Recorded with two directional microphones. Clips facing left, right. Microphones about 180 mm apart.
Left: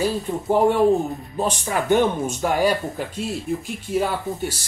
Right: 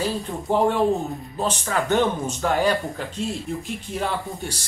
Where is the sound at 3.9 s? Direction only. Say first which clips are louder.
Left 6 dB; 5° left (ahead or behind).